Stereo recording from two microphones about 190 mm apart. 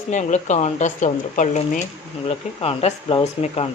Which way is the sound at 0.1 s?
40° left (ahead or behind).